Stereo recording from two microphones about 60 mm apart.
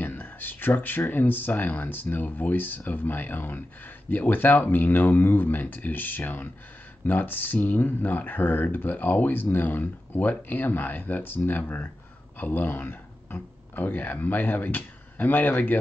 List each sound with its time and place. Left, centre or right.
0.0 s speech: left